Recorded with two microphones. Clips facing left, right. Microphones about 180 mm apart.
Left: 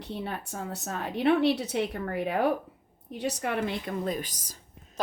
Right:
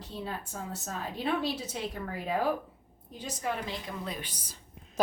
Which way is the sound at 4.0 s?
45° left (ahead or behind).